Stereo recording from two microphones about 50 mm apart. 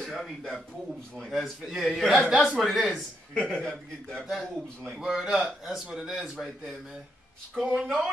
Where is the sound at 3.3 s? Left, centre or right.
Centre.